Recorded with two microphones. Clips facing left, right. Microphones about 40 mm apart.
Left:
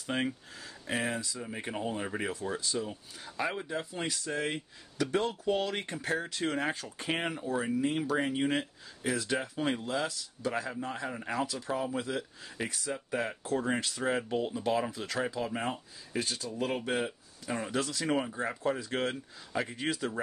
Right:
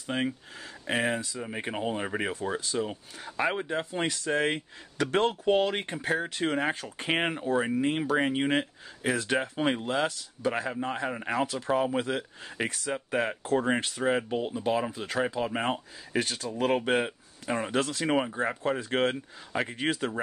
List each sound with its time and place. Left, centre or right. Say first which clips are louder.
0.0 s speech: right 2 dB; centre
0.8 s speech: right 5 dB; right
2.6 s speech: right 4 dB; right
5.3 s speech: right 6 dB; right
9.8 s speech: right 5 dB; right
10.5 s speech: right 3 dB; right
11.4 s speech: right 6 dB; right
12.6 s speech: right 3 dB; right
12.9 s speech: right 5 dB; right
14.0 s speech: right 3 dB; centre
15.7 s speech: right 6 dB; right
18.0 s speech: right 3 dB; right